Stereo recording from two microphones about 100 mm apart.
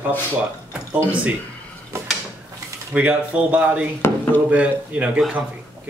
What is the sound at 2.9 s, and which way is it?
Speech, 15° right (ahead or behind).